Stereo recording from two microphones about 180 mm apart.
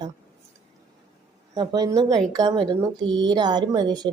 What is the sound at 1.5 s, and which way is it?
Speech, 20° right (ahead or behind).